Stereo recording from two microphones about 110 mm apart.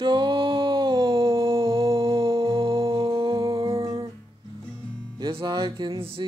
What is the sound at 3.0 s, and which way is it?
Humming, 50° right (ahead or behind).